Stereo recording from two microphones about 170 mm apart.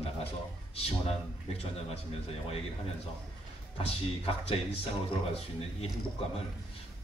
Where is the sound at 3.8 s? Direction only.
35° left (ahead or behind).